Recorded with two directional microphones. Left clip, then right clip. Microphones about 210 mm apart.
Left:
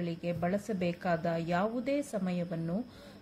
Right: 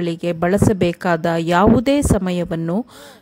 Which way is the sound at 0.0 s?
50° right (ahead or behind).